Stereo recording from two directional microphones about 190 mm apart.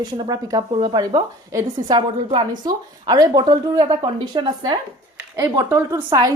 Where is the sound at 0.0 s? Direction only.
20° right (ahead or behind).